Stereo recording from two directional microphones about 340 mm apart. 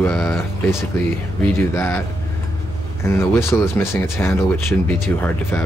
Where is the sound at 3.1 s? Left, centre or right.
Centre.